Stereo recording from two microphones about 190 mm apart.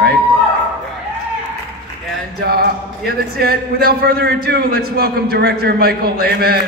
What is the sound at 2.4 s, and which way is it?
A man's voice, 60° right (ahead or behind).